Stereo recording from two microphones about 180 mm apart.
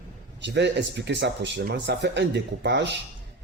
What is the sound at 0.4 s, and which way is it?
Speech, 70° right (ahead or behind).